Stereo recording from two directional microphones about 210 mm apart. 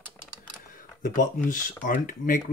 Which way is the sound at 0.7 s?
40° left (ahead or behind).